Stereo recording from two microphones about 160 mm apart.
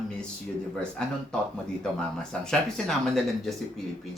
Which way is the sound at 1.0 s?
5° left (ahead or behind).